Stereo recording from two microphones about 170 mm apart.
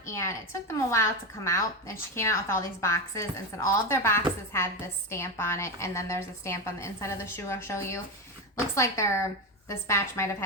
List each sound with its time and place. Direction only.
0.0 s a woman's voice: 15° left (ahead or behind)